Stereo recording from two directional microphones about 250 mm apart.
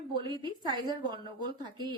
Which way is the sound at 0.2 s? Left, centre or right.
Centre.